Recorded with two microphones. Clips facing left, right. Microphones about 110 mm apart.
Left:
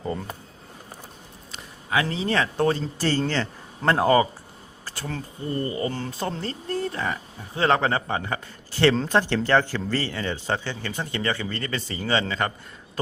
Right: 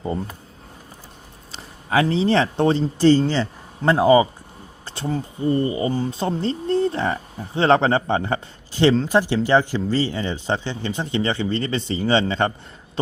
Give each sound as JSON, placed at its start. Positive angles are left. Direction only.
{"t": 1.5, "sound": "speech", "side_deg": -30}
{"t": 8.7, "sound": "speech", "side_deg": -15}